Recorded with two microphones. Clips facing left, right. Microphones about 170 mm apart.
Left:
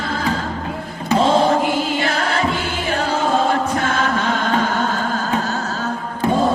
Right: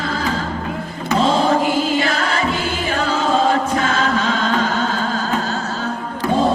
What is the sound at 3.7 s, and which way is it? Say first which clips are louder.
Choir: right 1 dB; 55° left (ahead or behind).